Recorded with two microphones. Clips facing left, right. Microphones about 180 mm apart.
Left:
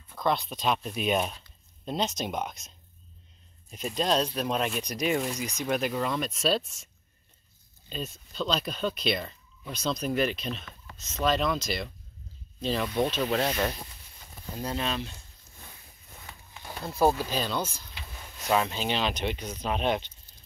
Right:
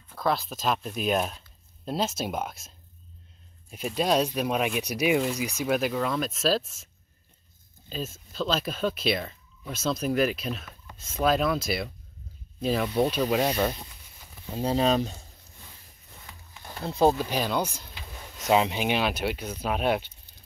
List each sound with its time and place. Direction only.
0.1 s speech: 5° right (ahead or behind)
3.7 s speech: 10° right (ahead or behind)
7.9 s speech: centre (ahead or behind)
14.5 s speech: 30° right (ahead or behind)
16.9 s speech: 20° right (ahead or behind)